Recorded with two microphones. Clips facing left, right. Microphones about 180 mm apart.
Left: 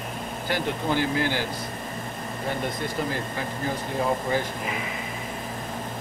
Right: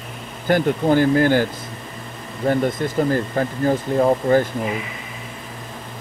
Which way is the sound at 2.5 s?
50° right (ahead or behind).